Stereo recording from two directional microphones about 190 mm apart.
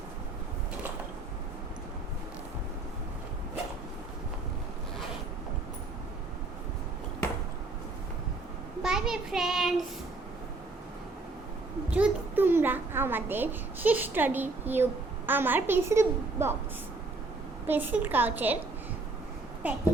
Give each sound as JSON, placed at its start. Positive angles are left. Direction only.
{"t": 8.8, "sound": "a child's voice", "side_deg": -5}
{"t": 11.9, "sound": "a child's voice", "side_deg": -10}
{"t": 17.7, "sound": "a child's voice", "side_deg": -10}
{"t": 19.6, "sound": "a child's voice", "side_deg": -10}